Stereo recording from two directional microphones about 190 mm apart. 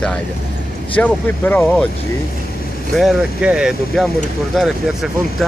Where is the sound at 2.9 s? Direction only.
Centre (ahead or behind).